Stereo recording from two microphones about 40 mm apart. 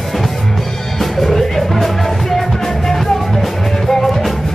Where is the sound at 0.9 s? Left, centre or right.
Centre.